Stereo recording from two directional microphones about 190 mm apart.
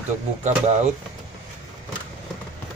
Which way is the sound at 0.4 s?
35° right (ahead or behind).